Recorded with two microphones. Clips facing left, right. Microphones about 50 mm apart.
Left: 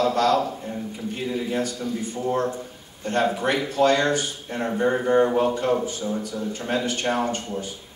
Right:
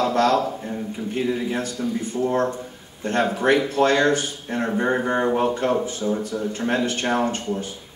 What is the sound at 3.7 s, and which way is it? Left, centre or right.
A man's voice, right.